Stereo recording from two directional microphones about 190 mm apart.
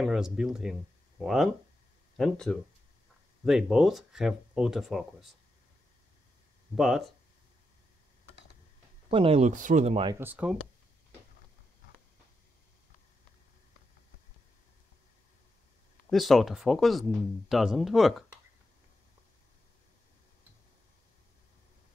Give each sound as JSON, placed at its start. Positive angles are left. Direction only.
{"t": 0.0, "sound": "speech", "side_deg": 0}
{"t": 6.7, "sound": "speech", "side_deg": 0}
{"t": 9.1, "sound": "speech", "side_deg": -30}
{"t": 10.0, "sound": "speech", "side_deg": -10}
{"t": 16.1, "sound": "speech", "side_deg": 0}